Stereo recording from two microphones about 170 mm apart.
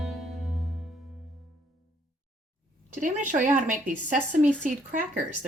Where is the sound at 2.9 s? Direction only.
50° right (ahead or behind).